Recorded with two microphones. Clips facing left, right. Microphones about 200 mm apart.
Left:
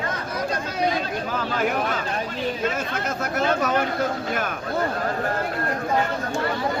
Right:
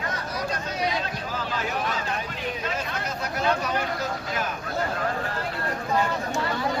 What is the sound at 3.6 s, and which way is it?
Speech, 55° left (ahead or behind).